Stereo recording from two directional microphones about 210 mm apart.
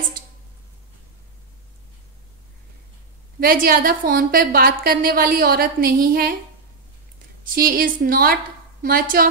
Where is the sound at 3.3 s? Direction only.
45° right (ahead or behind).